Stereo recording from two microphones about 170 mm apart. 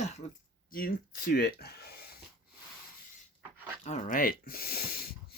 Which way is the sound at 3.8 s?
40° left (ahead or behind).